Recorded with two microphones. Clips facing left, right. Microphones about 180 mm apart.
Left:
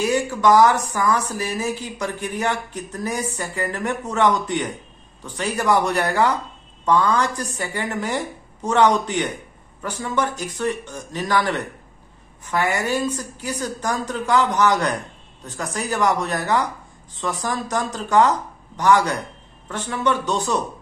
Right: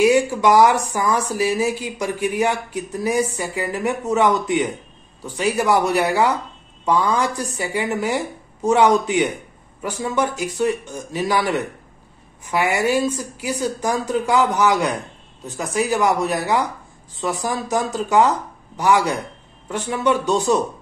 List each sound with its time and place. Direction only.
0.0 s speech: 10° right (ahead or behind)